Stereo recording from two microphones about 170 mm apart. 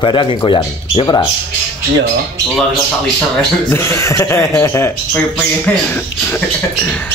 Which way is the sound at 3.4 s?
10° left (ahead or behind).